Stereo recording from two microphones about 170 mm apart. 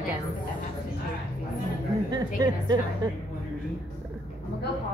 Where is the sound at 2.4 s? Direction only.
25° right (ahead or behind).